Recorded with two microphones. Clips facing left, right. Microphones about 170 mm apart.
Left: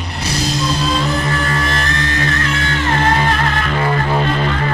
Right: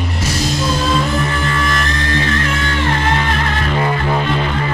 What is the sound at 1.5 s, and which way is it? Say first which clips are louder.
Music: right 1 dB; 35° left (ahead or behind).